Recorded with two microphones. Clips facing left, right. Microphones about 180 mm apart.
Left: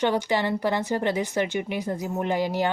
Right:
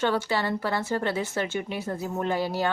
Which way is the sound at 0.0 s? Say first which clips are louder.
Left 2 dB; 15° left (ahead or behind).